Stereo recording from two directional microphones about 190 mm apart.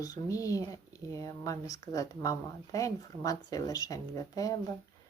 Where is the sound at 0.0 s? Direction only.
20° left (ahead or behind).